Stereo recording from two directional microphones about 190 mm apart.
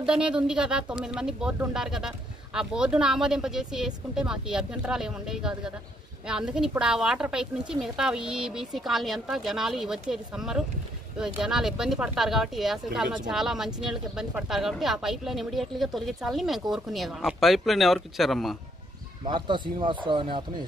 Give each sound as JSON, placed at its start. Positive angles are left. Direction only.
{"t": 0.0, "sound": "speech", "side_deg": -5}
{"t": 19.2, "sound": "speech", "side_deg": -25}